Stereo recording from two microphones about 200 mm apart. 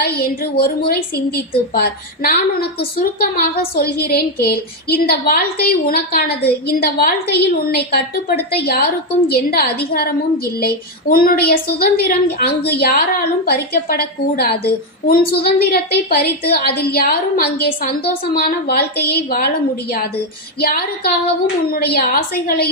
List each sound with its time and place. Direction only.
0.0 s a woman's voice: 50° left (ahead or behind)
1.7 s a woman's voice: 50° left (ahead or behind)